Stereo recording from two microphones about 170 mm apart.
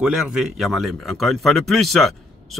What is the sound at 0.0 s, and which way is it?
Speech, 5° right (ahead or behind).